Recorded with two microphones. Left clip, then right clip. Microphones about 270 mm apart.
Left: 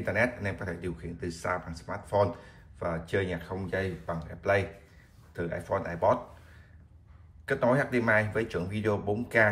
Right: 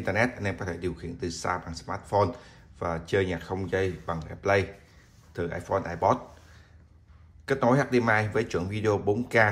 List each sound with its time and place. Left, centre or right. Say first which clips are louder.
0.0 s speech: right 2 dB; centre
7.4 s speech: right 2 dB; centre